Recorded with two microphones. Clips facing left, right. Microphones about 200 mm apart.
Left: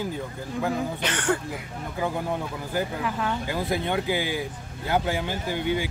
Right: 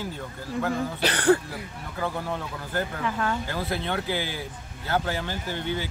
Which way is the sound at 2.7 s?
5° left (ahead or behind).